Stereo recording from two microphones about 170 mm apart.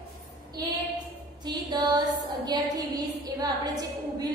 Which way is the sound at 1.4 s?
25° right (ahead or behind).